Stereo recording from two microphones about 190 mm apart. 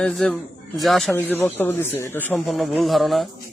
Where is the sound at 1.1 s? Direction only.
10° left (ahead or behind).